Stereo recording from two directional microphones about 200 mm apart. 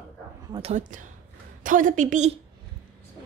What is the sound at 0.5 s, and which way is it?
A woman's voice, 35° right (ahead or behind).